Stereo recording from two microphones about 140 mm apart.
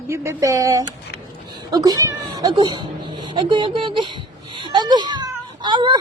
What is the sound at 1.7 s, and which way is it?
Cat, 25° right (ahead or behind).